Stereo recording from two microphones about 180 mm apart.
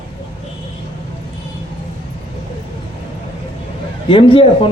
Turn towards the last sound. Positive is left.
turn(degrees=30)  # may be behind; listen again after turning